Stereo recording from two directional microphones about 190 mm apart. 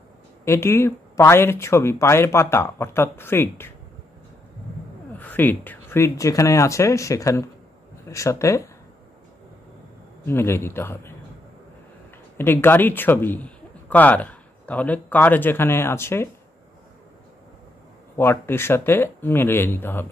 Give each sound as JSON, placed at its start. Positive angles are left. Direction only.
{"t": 0.5, "sound": "speech", "side_deg": 15}
{"t": 5.2, "sound": "speech", "side_deg": 10}
{"t": 10.2, "sound": "speech", "side_deg": 15}
{"t": 12.4, "sound": "speech", "side_deg": 10}
{"t": 18.1, "sound": "speech", "side_deg": 10}